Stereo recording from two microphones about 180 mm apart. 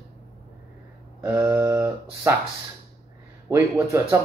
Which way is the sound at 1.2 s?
10° right (ahead or behind).